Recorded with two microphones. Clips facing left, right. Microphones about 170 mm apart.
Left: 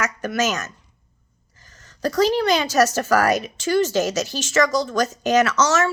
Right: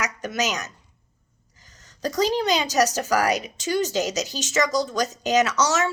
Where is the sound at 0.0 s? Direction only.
15° right (ahead or behind).